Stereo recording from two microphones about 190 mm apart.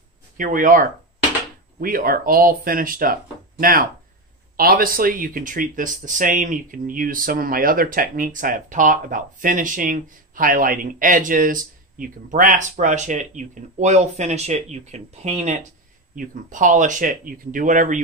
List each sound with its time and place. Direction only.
0.4 s speech: 45° right (ahead or behind)